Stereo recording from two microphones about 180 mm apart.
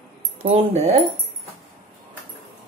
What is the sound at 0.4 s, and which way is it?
Speech, 35° right (ahead or behind).